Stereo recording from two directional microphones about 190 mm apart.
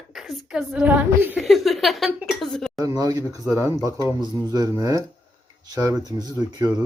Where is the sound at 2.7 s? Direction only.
20° right (ahead or behind).